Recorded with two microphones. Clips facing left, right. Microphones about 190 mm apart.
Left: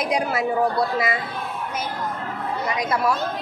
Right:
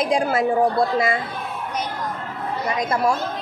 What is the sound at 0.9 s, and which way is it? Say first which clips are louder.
Speech: right 3 dB; 45° right (ahead or behind).